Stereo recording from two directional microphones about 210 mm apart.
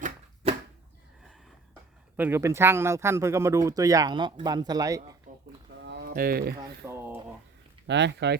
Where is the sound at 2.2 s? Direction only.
10° right (ahead or behind).